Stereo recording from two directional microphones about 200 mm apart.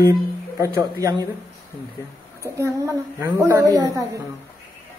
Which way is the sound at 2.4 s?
15° right (ahead or behind).